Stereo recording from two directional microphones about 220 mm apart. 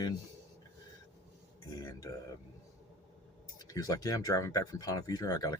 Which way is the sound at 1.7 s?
15° left (ahead or behind).